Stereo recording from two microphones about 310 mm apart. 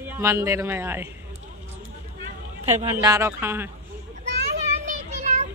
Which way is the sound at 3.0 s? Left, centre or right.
Centre.